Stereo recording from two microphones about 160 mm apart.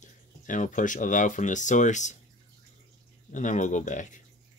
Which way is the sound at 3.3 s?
50° left (ahead or behind).